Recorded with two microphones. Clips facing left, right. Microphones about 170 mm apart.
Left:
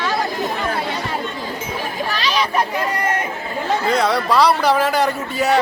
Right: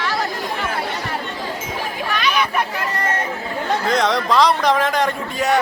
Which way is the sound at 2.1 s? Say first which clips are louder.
Even; 30° left (ahead or behind).